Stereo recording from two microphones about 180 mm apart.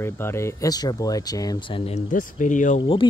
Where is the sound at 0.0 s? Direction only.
15° left (ahead or behind).